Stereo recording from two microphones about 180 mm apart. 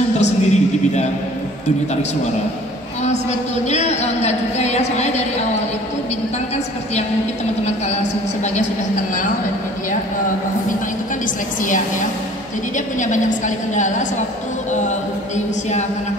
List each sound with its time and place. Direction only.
0.2 s a sound: 40° left (ahead or behind)
3.6 s a woman's voice: 40° left (ahead or behind)
12.7 s a woman's voice: 45° left (ahead or behind)